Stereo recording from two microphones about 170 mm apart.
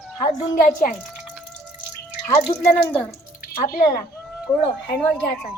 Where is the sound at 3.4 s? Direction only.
60° left (ahead or behind).